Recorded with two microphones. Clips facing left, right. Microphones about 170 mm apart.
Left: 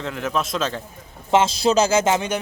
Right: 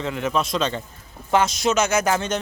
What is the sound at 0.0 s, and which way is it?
Speech, centre (ahead or behind).